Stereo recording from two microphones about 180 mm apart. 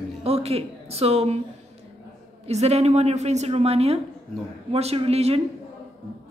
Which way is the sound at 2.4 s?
35° right (ahead or behind).